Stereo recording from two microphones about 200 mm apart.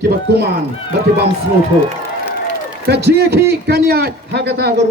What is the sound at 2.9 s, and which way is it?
A man's voice, 55° right (ahead or behind).